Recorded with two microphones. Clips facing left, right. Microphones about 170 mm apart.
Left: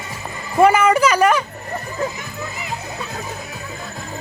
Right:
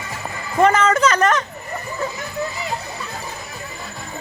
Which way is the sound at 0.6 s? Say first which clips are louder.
Left 2 dB; 10° left (ahead or behind).